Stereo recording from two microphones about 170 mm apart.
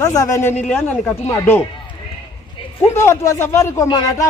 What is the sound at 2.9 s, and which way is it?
Speech, 15° left (ahead or behind).